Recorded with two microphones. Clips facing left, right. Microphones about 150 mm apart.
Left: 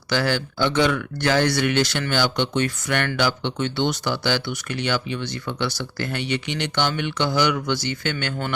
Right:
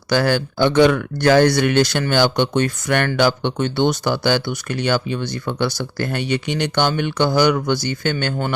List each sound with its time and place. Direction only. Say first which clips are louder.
0.1 s speech: right 5 dB; 45° right (ahead or behind)